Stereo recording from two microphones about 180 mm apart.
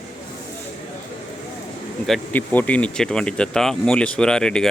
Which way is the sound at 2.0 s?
5° left (ahead or behind).